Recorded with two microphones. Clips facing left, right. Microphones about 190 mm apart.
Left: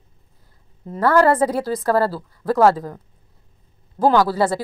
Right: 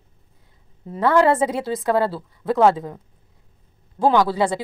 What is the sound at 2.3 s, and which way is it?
Speech, 20° right (ahead or behind).